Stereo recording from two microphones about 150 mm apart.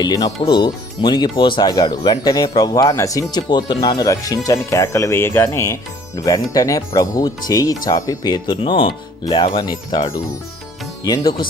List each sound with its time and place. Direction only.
0.0 s speech: 25° left (ahead or behind)